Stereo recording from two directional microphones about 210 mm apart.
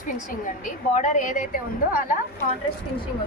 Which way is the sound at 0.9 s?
35° left (ahead or behind).